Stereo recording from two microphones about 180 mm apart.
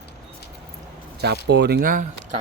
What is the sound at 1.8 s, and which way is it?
Speech, 50° right (ahead or behind).